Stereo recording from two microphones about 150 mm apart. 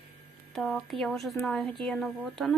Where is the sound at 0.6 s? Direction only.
Centre (ahead or behind).